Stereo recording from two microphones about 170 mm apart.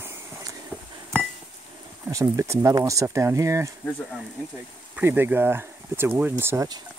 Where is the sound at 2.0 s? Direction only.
20° right (ahead or behind).